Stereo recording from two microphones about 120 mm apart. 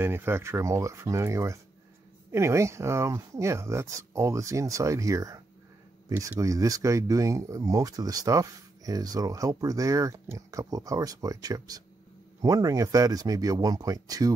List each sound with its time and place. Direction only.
0.0 s speech: 20° right (ahead or behind)